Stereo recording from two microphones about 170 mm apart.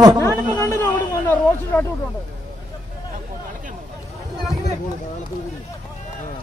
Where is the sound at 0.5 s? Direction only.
15° left (ahead or behind).